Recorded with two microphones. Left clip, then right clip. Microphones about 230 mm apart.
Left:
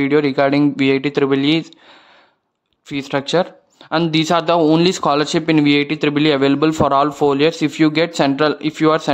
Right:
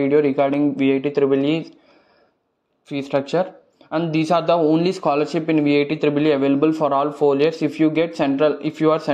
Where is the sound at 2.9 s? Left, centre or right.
Centre.